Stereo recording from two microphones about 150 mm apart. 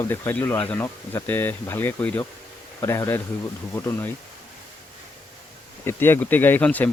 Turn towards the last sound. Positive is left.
turn(degrees=10)  # may be behind; listen again after turning